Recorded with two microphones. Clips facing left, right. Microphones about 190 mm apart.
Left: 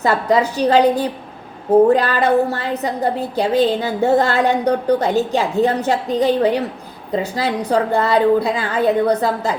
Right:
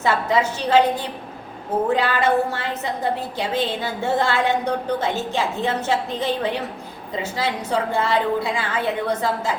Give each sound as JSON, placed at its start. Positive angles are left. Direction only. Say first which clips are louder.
{"t": 0.0, "sound": "a woman's voice", "louder": "left 4 dB", "side_deg": 40}